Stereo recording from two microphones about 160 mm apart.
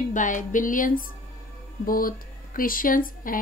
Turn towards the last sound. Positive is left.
turn(degrees=60)  # may be behind; listen again after turning